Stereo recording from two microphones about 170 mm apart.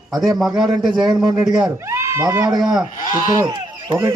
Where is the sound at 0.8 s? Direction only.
25° right (ahead or behind).